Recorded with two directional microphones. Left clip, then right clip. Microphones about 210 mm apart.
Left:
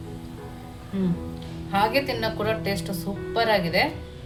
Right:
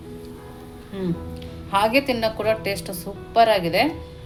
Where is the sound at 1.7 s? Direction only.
35° right (ahead or behind).